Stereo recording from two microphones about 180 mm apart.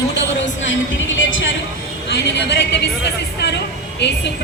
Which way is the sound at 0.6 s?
90° left.